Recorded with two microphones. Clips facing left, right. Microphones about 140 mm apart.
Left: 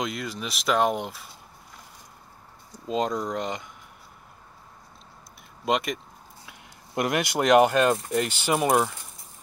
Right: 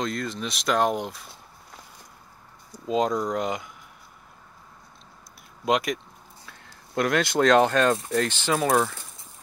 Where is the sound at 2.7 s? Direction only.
Centre (ahead or behind).